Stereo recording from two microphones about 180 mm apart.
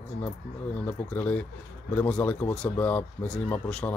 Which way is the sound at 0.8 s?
10° left (ahead or behind).